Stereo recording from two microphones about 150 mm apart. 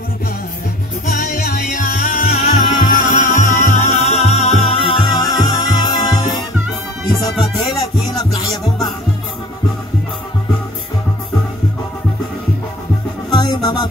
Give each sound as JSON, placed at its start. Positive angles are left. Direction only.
{"t": 1.0, "sound": "music", "side_deg": 75}
{"t": 5.0, "sound": "music", "side_deg": 25}
{"t": 8.2, "sound": "music", "side_deg": 25}
{"t": 13.3, "sound": "music", "side_deg": 25}